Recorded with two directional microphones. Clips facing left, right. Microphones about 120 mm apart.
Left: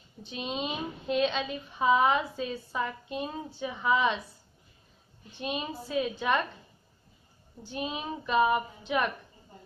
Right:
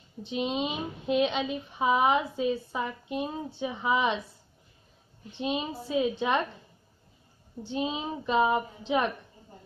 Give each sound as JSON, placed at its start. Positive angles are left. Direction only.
{"t": 0.2, "sound": "a woman's voice", "side_deg": -20}
{"t": 5.3, "sound": "a woman's voice", "side_deg": -20}
{"t": 7.6, "sound": "a woman's voice", "side_deg": -20}